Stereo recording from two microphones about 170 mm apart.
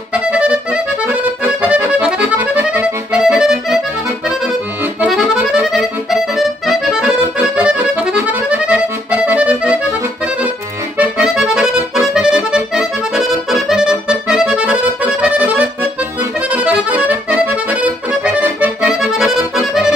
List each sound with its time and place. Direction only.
0.1 s accordion: 5° right (ahead or behind)
5.0 s accordion: 5° right (ahead or behind)
11.0 s accordion: 5° right (ahead or behind)